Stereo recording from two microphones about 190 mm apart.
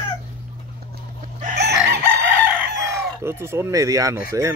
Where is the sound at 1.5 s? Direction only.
60° right (ahead or behind).